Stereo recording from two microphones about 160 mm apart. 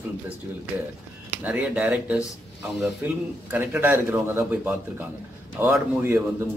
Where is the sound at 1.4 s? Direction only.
10° right (ahead or behind).